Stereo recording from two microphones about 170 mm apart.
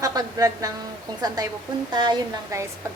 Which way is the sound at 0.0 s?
20° right (ahead or behind).